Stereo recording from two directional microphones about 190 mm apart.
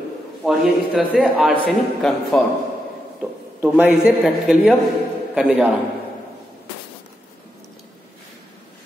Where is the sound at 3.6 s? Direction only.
10° right (ahead or behind).